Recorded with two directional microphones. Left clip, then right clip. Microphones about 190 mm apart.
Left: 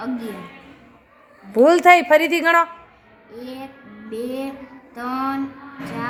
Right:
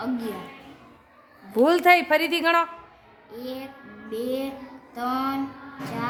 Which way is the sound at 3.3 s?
10° right (ahead or behind).